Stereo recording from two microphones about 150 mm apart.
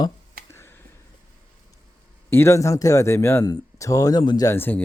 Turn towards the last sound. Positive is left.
turn(degrees=15)  # may be behind; listen again after turning